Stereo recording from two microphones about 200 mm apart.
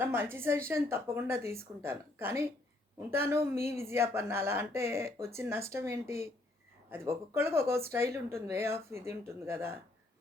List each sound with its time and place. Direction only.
0.0 s a woman's voice: 10° right (ahead or behind)